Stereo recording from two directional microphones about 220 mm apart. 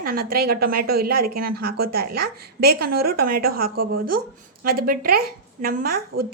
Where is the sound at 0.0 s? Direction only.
40° right (ahead or behind).